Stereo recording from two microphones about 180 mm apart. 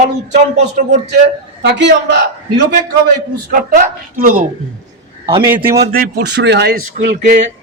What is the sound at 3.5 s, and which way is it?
Speech, 55° right (ahead or behind).